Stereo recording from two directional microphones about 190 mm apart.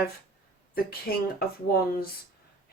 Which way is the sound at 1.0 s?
55° left (ahead or behind).